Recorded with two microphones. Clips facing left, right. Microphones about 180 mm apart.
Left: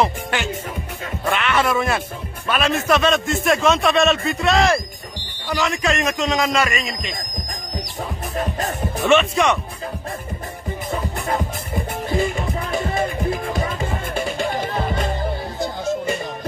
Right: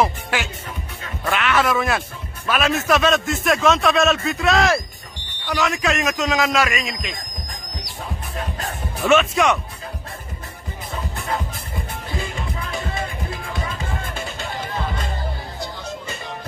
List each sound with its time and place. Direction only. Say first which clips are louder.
0.0 s speech: even; 5° right (ahead or behind)
9.0 s speech: even; centre (ahead or behind)
10.9 s music: left 3 dB; 50° left (ahead or behind)
15.6 s music: left 10 dB; 50° left (ahead or behind)